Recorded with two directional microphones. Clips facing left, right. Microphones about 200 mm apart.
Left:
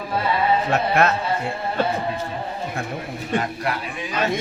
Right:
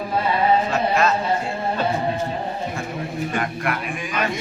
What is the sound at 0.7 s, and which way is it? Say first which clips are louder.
Speech: left 1 dB; 60° left (ahead or behind).